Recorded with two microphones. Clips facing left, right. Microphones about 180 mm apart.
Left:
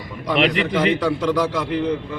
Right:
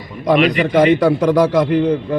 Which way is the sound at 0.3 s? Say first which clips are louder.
Right 5 dB; 45° right (ahead or behind).